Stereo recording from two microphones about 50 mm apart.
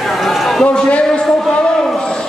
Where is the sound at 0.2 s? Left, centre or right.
Centre.